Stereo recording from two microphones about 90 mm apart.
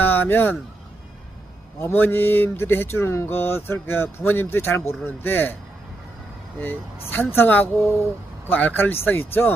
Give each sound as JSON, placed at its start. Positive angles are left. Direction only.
{"t": 0.0, "sound": "a sound", "side_deg": 20}
{"t": 1.8, "sound": "speech", "side_deg": 25}
{"t": 6.6, "sound": "speech", "side_deg": 20}